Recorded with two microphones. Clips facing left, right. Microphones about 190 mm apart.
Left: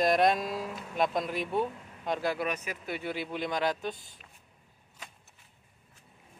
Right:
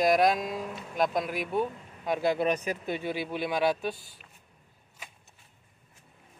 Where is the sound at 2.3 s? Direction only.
35° right (ahead or behind).